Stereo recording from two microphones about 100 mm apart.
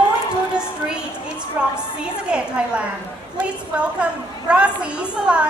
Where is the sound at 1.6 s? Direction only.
15° right (ahead or behind).